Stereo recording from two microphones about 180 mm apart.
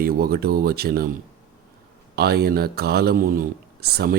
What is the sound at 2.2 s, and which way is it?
Speech, 60° right (ahead or behind).